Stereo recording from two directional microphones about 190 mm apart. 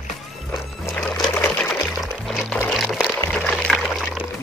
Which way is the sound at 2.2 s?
Centre (ahead or behind).